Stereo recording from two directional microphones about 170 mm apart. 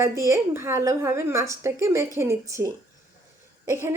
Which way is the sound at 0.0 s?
15° right (ahead or behind).